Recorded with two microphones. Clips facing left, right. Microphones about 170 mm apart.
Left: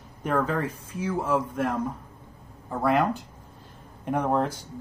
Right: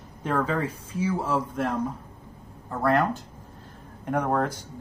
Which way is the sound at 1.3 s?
5° left (ahead or behind).